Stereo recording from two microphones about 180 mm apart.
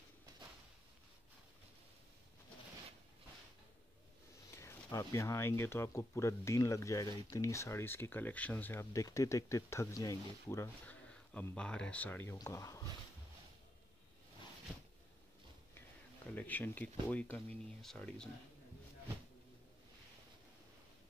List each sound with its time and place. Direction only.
4.6 s speech: 15° left (ahead or behind)
16.3 s speech: 10° left (ahead or behind)